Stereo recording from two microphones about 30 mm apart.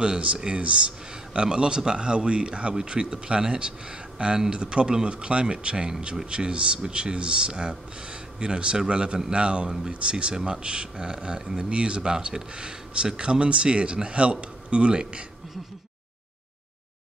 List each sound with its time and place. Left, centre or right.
0.0 s speech: right
10.3 s speech: right
10.6 s a man's voice: right